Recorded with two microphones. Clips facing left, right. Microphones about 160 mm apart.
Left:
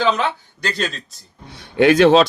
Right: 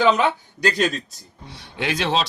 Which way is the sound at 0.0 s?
15° right (ahead or behind).